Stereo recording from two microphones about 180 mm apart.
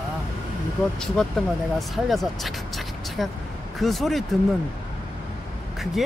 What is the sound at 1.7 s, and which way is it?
Speech, centre (ahead or behind).